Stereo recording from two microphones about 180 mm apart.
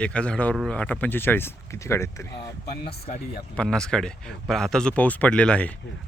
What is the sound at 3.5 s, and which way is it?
Speech, 5° left (ahead or behind).